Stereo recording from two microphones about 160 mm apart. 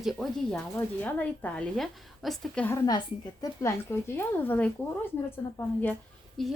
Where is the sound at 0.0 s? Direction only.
Centre (ahead or behind).